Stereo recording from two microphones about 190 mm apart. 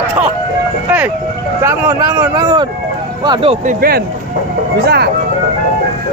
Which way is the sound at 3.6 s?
50° right (ahead or behind).